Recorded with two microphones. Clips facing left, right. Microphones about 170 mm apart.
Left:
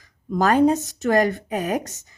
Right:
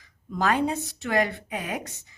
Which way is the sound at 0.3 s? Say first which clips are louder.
Left 8 dB; 45° left (ahead or behind).